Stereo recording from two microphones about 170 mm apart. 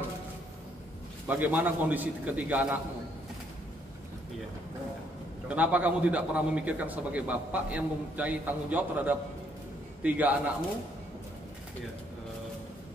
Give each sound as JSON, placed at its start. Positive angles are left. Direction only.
{"t": 1.2, "sound": "a man's voice", "side_deg": -10}
{"t": 5.5, "sound": "a man's voice", "side_deg": -10}